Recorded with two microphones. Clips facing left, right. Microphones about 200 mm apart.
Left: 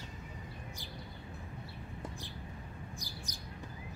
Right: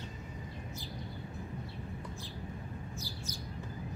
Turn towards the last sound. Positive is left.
turn(degrees=15)  # may be behind; listen again after turning